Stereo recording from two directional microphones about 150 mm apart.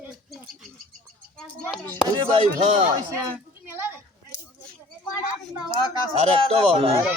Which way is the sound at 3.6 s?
15° right (ahead or behind).